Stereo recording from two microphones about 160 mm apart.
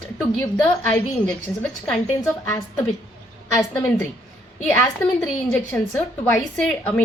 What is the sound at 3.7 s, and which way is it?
Speech, 15° left (ahead or behind).